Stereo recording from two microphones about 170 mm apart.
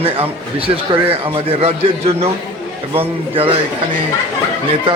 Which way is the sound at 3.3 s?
35° right (ahead or behind).